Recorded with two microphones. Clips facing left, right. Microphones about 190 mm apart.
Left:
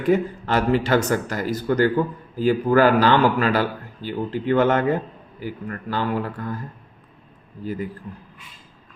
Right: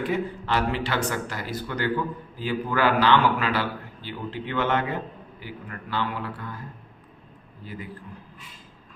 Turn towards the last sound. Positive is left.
turn(degrees=45)  # may be behind; listen again after turning